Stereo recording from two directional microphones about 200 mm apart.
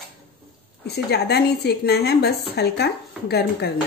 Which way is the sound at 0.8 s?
55° left (ahead or behind).